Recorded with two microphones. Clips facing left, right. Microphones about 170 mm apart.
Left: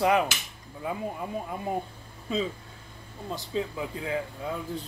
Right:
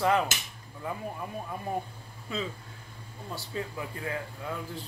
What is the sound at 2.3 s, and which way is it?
A man's voice, 20° left (ahead or behind).